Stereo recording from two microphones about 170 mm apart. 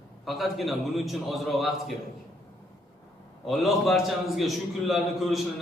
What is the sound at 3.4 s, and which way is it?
A man's voice, centre (ahead or behind).